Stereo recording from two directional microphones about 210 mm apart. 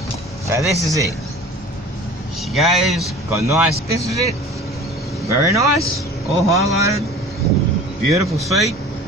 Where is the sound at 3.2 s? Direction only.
10° right (ahead or behind).